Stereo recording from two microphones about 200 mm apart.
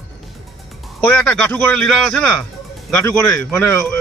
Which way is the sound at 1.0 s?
5° left (ahead or behind).